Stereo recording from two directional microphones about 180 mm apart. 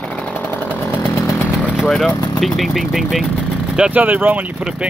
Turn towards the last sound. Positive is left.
turn(degrees=-5)  # may be behind; listen again after turning